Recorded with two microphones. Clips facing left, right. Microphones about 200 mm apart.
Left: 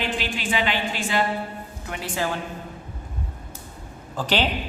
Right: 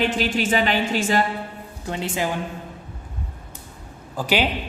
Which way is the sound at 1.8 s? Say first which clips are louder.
Right 3 dB; 25° right (ahead or behind).